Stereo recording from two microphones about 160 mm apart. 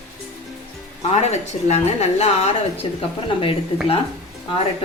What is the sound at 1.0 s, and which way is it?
A woman's voice, 40° left (ahead or behind).